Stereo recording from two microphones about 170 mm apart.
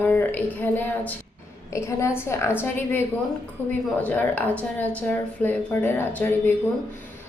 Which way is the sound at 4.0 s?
10° left (ahead or behind).